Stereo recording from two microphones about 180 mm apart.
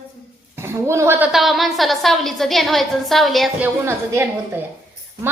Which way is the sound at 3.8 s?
10° right (ahead or behind).